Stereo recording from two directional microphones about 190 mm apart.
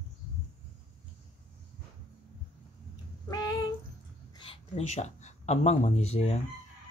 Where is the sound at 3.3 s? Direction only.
20° left (ahead or behind).